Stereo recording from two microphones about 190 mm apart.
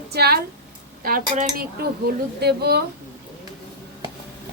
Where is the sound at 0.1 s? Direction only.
55° right (ahead or behind).